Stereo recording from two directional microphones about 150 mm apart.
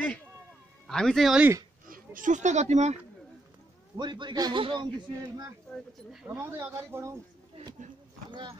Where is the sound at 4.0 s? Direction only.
30° right (ahead or behind).